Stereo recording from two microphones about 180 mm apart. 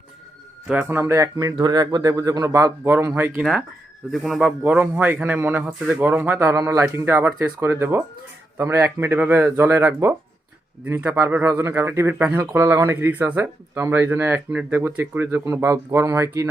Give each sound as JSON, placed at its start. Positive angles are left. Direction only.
{"t": 0.7, "sound": "speech", "side_deg": -10}